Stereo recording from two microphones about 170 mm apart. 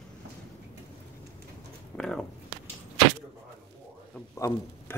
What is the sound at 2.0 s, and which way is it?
Speech, 5° left (ahead or behind).